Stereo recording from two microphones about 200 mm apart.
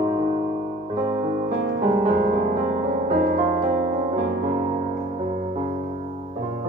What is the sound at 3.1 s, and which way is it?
Music, 40° right (ahead or behind).